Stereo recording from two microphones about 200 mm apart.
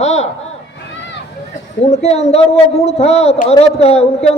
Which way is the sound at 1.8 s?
30° left (ahead or behind).